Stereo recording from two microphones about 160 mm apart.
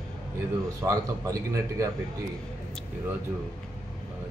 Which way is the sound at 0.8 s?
20° right (ahead or behind).